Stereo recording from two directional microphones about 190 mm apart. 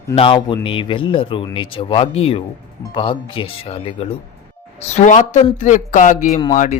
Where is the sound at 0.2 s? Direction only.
25° left (ahead or behind).